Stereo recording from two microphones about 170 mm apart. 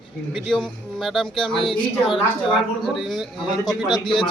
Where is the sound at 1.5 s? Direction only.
30° left (ahead or behind).